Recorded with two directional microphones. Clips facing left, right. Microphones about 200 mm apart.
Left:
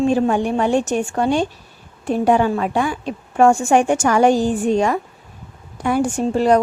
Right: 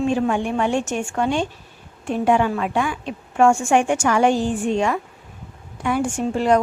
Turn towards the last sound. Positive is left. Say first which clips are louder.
# left 3 dB
turn(degrees=35)  # may be behind; listen again after turning